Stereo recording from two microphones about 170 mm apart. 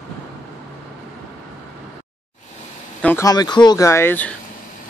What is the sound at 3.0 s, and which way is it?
Speech, 15° left (ahead or behind).